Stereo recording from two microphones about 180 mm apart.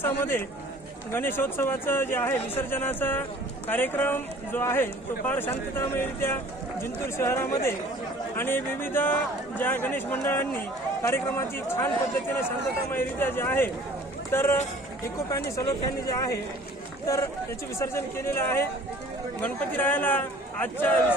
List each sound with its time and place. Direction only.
0.0 s speech: 10° left (ahead or behind)
17.7 s speech: 15° left (ahead or behind)